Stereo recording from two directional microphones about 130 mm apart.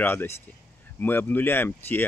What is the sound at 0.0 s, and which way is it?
Speech, 15° left (ahead or behind).